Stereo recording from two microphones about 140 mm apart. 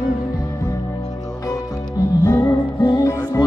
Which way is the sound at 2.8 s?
25° left (ahead or behind).